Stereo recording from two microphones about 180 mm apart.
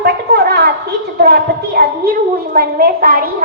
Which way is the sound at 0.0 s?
65° right (ahead or behind).